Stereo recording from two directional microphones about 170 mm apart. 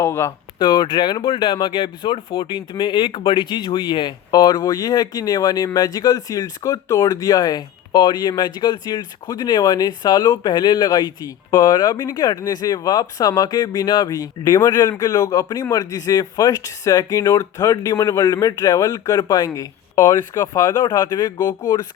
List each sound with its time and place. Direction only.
0.0 s speech: 15° left (ahead or behind)
0.6 s speech: 25° left (ahead or behind)